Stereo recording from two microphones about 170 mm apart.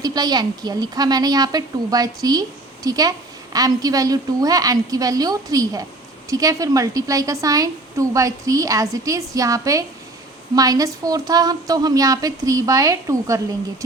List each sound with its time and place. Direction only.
0.0 s a woman's voice: 25° right (ahead or behind)